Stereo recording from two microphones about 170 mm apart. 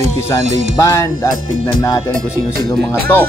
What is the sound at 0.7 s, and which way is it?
Speech, 20° left (ahead or behind).